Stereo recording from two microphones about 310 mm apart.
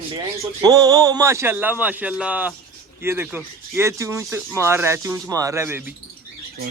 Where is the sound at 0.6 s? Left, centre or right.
Centre.